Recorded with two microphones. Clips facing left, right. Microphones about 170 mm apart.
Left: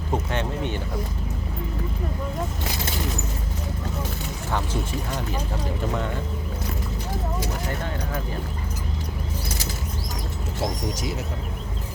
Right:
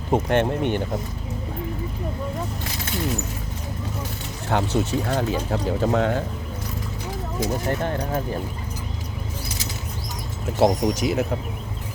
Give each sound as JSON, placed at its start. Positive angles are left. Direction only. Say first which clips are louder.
{"t": 0.1, "sound": "speech", "louder": "right 7 dB", "side_deg": -60}
{"t": 4.5, "sound": "speech", "louder": "right 6 dB", "side_deg": -70}
{"t": 10.6, "sound": "speech", "louder": "right 9 dB", "side_deg": -65}